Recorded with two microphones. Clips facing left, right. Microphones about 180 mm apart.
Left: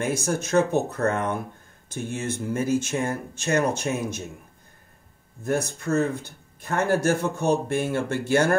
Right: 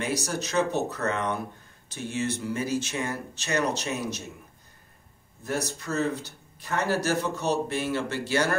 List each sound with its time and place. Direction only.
0.0 s speech: 50° left (ahead or behind)
5.4 s speech: 50° left (ahead or behind)